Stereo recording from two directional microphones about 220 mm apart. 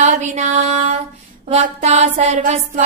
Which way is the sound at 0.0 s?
35° right (ahead or behind).